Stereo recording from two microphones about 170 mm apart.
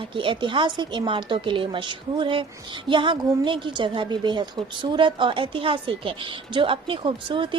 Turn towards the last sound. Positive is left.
turn(degrees=-30)  # may be behind; listen again after turning